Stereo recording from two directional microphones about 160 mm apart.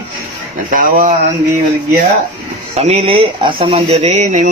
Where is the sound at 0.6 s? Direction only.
55° right (ahead or behind).